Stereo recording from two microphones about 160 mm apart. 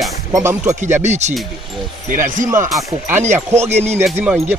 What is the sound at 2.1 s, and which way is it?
Speech, 55° right (ahead or behind).